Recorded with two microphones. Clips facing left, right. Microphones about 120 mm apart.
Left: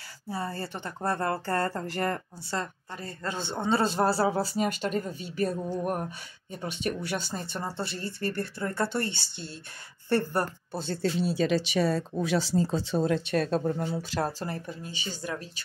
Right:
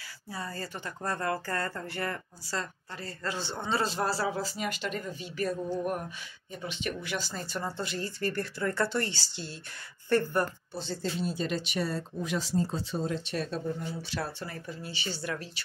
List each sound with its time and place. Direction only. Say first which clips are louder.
0.3 s speech: left 4 dB; 25° left (ahead or behind)
2.5 s speech: left 3 dB; 20° left (ahead or behind)
4.0 s speech: left 5 dB; 35° left (ahead or behind)
7.3 s speech: left 1 dB; 25° left (ahead or behind)
10.9 s speech: left 5 dB; 75° left (ahead or behind)
13.3 s speech: left 6 dB; 55° left (ahead or behind)
14.1 s speech: left 5 dB; 40° left (ahead or behind)